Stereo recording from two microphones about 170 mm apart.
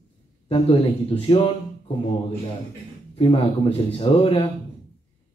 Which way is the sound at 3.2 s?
35° left (ahead or behind).